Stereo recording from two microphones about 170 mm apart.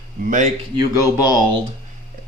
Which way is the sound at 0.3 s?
45° right (ahead or behind).